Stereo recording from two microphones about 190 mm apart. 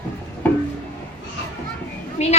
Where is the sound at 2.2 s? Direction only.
35° left (ahead or behind).